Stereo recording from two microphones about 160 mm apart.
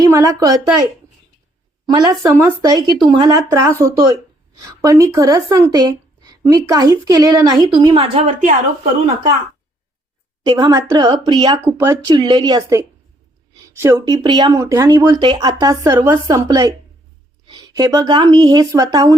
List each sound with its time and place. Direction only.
0.0 s speech: 20° right (ahead or behind)
1.9 s speech: 25° right (ahead or behind)
2.6 s a woman's voice: 25° right (ahead or behind)
10.4 s speech: 25° right (ahead or behind)
11.6 s speech: 15° right (ahead or behind)
12.1 s speech: 30° right (ahead or behind)